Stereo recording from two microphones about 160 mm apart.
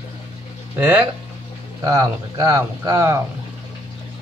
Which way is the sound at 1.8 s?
20° right (ahead or behind).